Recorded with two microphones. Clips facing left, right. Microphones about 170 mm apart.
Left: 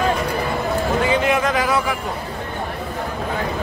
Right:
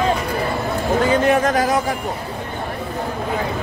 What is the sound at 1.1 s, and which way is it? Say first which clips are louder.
Speech: right 3 dB; 45° right (ahead or behind).